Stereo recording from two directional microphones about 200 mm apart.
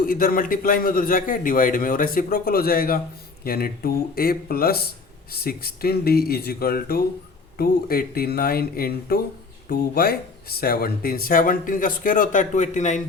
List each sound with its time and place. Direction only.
0.0 s speech: 45° left (ahead or behind)